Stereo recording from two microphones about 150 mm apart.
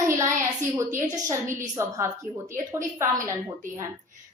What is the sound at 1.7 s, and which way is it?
Speech, 20° right (ahead or behind).